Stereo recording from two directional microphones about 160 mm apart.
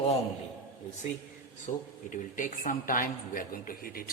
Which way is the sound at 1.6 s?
50° left (ahead or behind).